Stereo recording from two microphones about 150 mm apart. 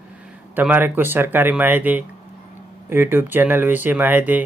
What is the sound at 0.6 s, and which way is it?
Speech, 15° right (ahead or behind).